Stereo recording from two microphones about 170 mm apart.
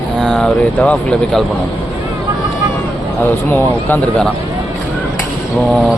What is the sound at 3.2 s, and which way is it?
Speech, 10° left (ahead or behind).